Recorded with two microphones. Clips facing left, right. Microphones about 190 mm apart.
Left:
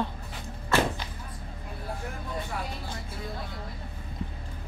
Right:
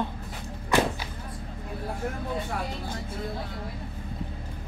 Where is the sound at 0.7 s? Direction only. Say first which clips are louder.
Right 2 dB; 15° right (ahead or behind).